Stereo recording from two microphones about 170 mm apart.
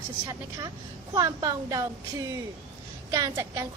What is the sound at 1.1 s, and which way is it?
Speech, 25° right (ahead or behind).